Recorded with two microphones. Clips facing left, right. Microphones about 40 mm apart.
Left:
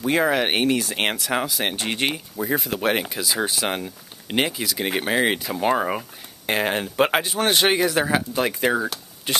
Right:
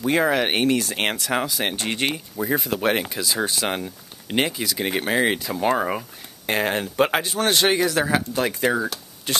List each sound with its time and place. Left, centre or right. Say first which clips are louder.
0.0 s speech: even; centre